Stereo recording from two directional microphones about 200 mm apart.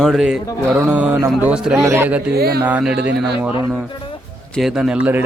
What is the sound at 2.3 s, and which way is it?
Speech, 50° right (ahead or behind).